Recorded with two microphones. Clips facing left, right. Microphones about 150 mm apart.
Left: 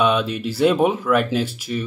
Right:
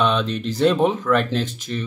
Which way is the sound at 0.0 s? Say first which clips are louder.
Left 1 dB; 10° left (ahead or behind).